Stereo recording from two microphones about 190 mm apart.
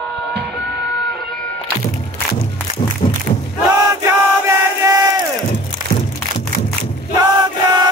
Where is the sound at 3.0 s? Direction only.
30° left (ahead or behind).